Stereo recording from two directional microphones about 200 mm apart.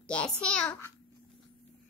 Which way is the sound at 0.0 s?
5° left (ahead or behind).